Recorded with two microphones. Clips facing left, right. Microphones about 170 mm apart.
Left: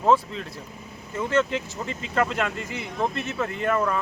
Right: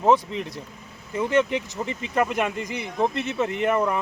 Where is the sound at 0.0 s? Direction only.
20° right (ahead or behind).